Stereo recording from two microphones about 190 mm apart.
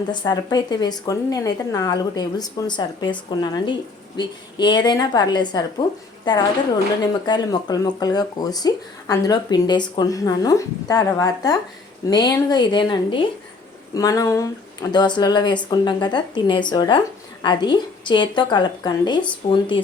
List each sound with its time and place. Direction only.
0.1 s speech: 25° left (ahead or behind)
7.0 s speech: 20° left (ahead or behind)